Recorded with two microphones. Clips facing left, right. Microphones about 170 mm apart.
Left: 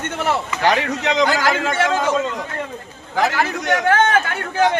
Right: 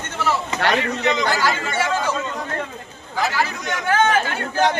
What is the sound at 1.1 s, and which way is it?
Speech, 75° left (ahead or behind).